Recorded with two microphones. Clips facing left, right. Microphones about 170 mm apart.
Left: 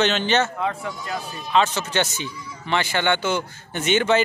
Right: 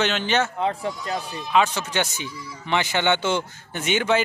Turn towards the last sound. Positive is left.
turn(degrees=-10)  # may be behind; listen again after turning